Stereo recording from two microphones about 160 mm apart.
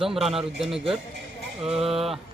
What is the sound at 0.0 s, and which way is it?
Speech, 5° right (ahead or behind).